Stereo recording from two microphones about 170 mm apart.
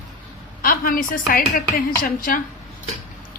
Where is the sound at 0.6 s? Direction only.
55° left (ahead or behind).